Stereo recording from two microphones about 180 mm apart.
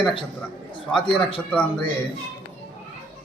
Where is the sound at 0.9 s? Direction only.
30° left (ahead or behind).